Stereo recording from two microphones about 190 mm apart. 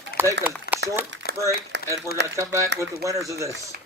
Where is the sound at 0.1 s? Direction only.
55° left (ahead or behind).